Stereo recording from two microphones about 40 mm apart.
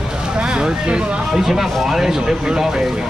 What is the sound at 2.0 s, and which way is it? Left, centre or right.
Speech, centre.